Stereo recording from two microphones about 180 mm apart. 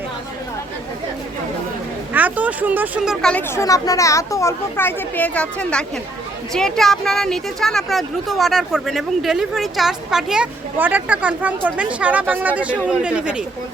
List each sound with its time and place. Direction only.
2.1 s speech: 10° right (ahead or behind)
3.5 s speech: 15° left (ahead or behind); by 13.4 s 5° right (ahead or behind)